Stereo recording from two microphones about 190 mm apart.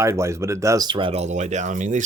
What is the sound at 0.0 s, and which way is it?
Speech, 15° right (ahead or behind).